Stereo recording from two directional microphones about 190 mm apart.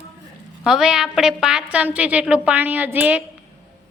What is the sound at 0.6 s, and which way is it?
A woman's voice, 5° right (ahead or behind).